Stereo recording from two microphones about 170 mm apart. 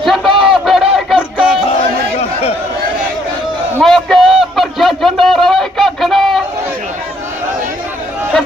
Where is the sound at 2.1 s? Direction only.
35° left (ahead or behind).